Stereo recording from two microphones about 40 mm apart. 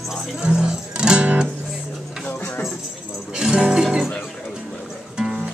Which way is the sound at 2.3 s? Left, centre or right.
Left.